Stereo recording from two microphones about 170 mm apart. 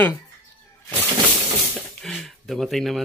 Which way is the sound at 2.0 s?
Centre (ahead or behind).